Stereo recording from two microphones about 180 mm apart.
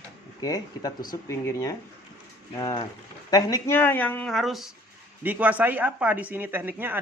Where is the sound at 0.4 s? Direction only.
20° left (ahead or behind).